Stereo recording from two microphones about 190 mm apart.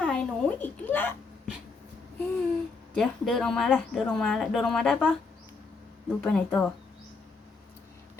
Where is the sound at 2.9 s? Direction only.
Centre (ahead or behind).